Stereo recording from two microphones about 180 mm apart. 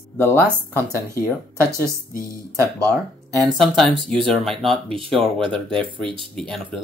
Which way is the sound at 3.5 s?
Centre (ahead or behind).